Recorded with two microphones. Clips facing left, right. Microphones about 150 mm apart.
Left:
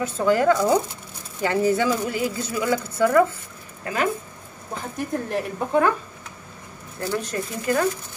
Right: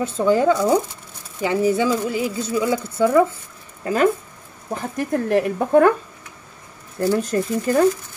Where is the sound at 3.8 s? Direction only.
40° right (ahead or behind).